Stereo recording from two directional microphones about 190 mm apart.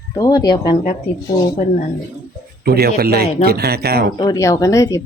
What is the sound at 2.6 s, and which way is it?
Speech, 55° right (ahead or behind).